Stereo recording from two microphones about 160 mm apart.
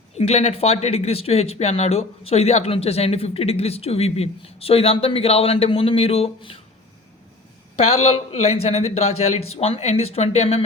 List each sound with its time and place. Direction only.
0.1 s speech: 40° left (ahead or behind)
7.8 s speech: 40° left (ahead or behind)